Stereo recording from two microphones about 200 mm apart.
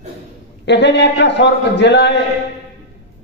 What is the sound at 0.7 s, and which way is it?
A man's voice, 60° left (ahead or behind).